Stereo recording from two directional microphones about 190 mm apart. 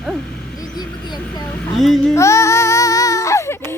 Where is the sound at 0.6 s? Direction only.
20° left (ahead or behind).